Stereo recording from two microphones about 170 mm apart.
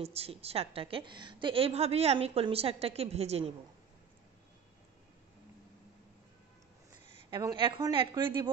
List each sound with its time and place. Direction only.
0.0 s a woman's voice: 35° right (ahead or behind)
7.2 s a woman's voice: 25° right (ahead or behind)